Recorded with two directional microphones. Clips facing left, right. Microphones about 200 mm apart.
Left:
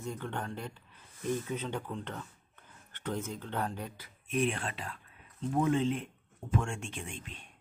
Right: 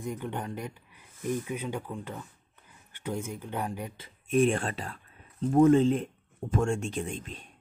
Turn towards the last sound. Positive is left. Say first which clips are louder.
# right 8 dB
turn(degrees=-40)  # may be behind; listen again after turning